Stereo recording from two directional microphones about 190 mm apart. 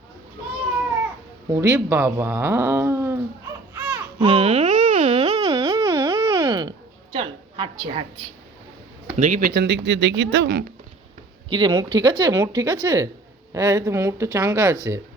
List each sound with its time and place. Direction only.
1.5 s speech: 15° right (ahead or behind)
4.2 s a sound: 30° right (ahead or behind)
9.1 s speech: 40° right (ahead or behind)
9.8 s speech: 65° right (ahead or behind)
11.5 s speech: 25° right (ahead or behind)